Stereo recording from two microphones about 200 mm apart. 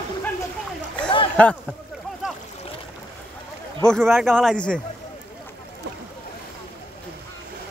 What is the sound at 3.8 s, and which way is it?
A man's voice, 5° left (ahead or behind).